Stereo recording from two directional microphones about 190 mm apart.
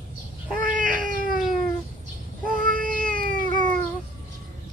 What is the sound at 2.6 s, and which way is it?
Cat, 45° right (ahead or behind).